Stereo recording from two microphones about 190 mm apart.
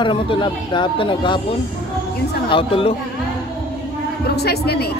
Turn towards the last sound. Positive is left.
turn(degrees=60)  # may be behind; listen again after turning